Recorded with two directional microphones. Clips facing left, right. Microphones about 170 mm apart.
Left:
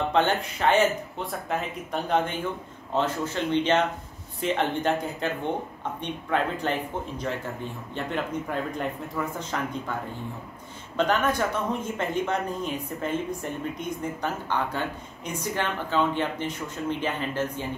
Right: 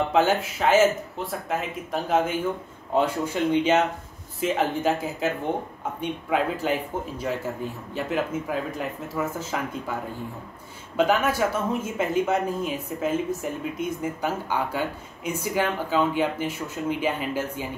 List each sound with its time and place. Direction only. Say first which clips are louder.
0.1 s speech: right 2 dB; 5° right (ahead or behind)
11.0 s speech: right 2 dB; 5° right (ahead or behind)